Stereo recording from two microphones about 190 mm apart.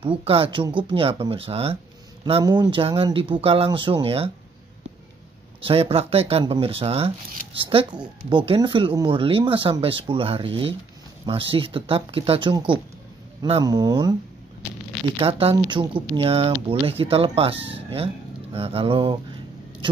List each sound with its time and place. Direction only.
0.2 s speech: 30° right (ahead or behind)
5.6 s speech: 30° right (ahead or behind)
8.3 s speech: 25° right (ahead or behind)
15.1 s speech: 30° right (ahead or behind)
19.8 s a sound: 25° right (ahead or behind)